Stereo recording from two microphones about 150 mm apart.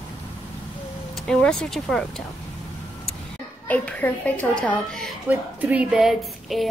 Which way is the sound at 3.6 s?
10° left (ahead or behind).